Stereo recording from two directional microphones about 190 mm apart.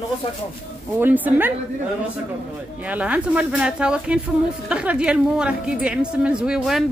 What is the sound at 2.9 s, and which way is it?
A woman's voice, 5° right (ahead or behind).